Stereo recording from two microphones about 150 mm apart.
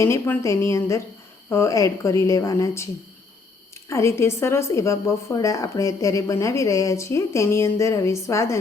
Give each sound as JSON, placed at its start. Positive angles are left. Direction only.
{"t": 0.0, "sound": "a woman's voice", "side_deg": 20}